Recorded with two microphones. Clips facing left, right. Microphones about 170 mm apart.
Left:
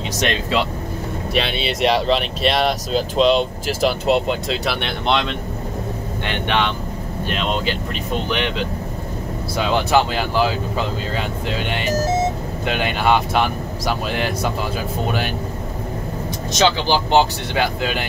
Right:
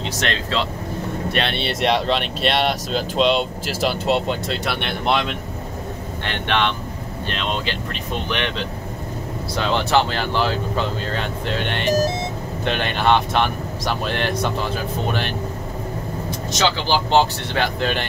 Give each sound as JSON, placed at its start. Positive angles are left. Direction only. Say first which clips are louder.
{"t": 0.2, "sound": "speech", "louder": "left 4 dB", "side_deg": 15}
{"t": 1.3, "sound": "speech", "louder": "left 3 dB", "side_deg": 0}
{"t": 6.2, "sound": "speech", "louder": "left 1 dB", "side_deg": 15}
{"t": 16.5, "sound": "speech", "louder": "left 3 dB", "side_deg": 15}